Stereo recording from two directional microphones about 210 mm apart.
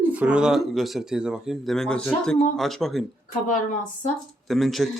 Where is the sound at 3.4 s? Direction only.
40° left (ahead or behind).